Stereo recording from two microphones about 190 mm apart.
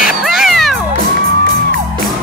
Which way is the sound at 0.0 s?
Centre (ahead or behind).